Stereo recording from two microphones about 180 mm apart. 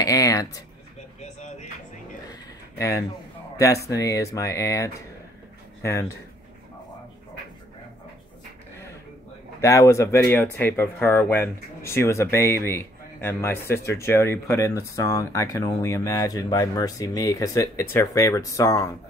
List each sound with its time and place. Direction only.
0.0 s a sound: 20° left (ahead or behind)
1.2 s music: 40° left (ahead or behind)
3.5 s speech: 15° left (ahead or behind)
9.6 s speech: 15° left (ahead or behind)